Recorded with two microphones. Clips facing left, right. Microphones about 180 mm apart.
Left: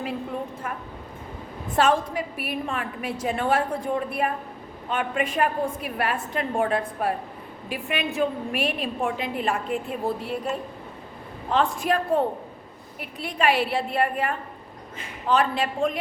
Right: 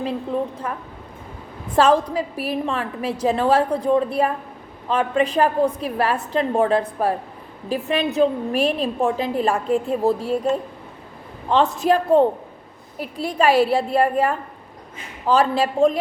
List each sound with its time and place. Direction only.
1.7 s a woman's voice: 35° right (ahead or behind)